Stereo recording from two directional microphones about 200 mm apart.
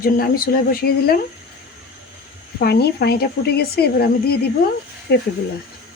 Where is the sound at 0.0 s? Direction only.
45° left (ahead or behind).